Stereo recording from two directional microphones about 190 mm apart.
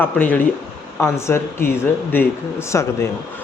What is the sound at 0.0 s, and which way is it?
Speech, 10° left (ahead or behind).